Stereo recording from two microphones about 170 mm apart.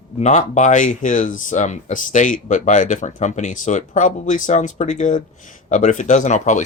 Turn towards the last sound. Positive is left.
turn(degrees=45)  # may be behind; listen again after turning